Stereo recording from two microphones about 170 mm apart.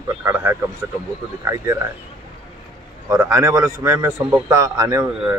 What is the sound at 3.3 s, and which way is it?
A man's voice, 20° right (ahead or behind).